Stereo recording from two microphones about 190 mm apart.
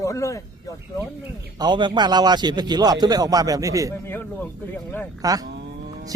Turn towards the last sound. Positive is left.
turn(degrees=-65)  # may be behind; listen again after turning